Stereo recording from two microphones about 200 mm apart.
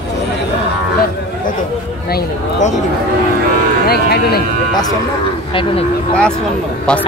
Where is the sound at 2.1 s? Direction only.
35° left (ahead or behind).